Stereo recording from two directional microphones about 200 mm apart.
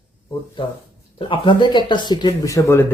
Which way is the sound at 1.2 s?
25° left (ahead or behind).